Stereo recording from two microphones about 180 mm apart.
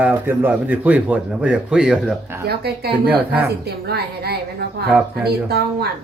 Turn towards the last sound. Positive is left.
turn(degrees=-65)  # may be behind; listen again after turning